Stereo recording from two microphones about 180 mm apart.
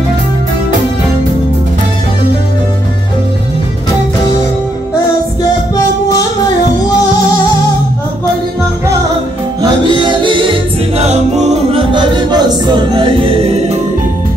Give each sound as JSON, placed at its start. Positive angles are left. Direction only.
{"t": 9.6, "sound": "music", "side_deg": -25}
{"t": 11.9, "sound": "music", "side_deg": -25}